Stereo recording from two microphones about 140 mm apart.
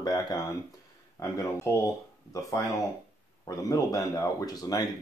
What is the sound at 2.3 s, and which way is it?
Speech, 25° left (ahead or behind).